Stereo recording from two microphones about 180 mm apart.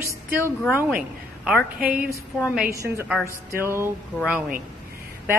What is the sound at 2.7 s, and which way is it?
A woman's voice, 15° right (ahead or behind).